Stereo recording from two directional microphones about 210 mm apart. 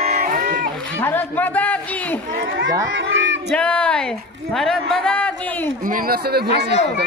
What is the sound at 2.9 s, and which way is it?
Crowd, 65° right (ahead or behind).